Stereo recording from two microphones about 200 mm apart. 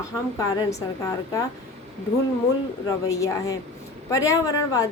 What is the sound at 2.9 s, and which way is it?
A woman's voice, 15° left (ahead or behind).